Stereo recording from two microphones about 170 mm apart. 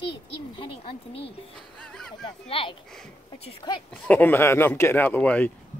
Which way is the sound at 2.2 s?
30° left (ahead or behind).